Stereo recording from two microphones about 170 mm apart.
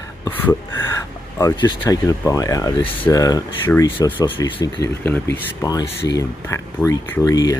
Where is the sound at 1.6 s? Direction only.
25° left (ahead or behind).